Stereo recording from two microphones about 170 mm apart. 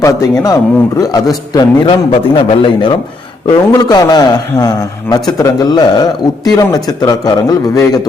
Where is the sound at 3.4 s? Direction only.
20° left (ahead or behind).